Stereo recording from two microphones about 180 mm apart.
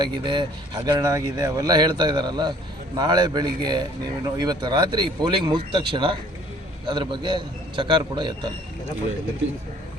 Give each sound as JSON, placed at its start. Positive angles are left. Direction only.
{"t": 0.0, "sound": "a man's voice", "side_deg": -25}